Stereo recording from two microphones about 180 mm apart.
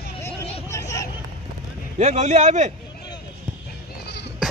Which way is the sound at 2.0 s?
40° right (ahead or behind).